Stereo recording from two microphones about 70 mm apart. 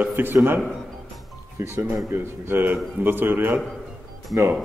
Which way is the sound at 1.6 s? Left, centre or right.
Right.